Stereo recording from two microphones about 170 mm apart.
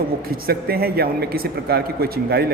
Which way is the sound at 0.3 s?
65° right (ahead or behind).